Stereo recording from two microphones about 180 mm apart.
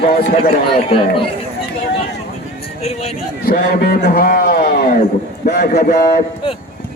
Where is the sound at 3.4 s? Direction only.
55° left (ahead or behind).